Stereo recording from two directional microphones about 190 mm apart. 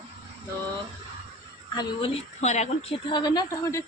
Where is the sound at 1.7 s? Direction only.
25° left (ahead or behind).